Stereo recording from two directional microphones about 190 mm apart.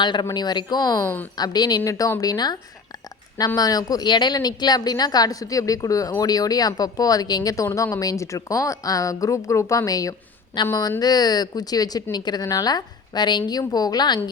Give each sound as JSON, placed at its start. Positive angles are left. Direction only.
{"t": 0.0, "sound": "speech", "side_deg": 25}
{"t": 1.4, "sound": "speech", "side_deg": 20}